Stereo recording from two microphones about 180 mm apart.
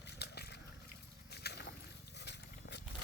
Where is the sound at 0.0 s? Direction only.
65° left (ahead or behind).